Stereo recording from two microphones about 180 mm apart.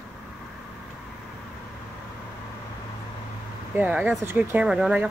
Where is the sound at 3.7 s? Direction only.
10° right (ahead or behind).